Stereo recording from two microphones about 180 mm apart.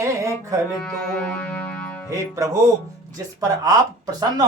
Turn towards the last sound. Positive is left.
turn(degrees=-20)  # may be behind; listen again after turning